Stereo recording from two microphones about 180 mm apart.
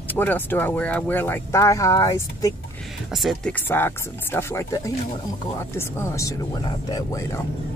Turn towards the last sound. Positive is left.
turn(degrees=20)  # may be behind; listen again after turning